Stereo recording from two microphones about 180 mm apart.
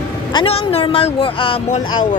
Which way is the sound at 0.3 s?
30° left (ahead or behind).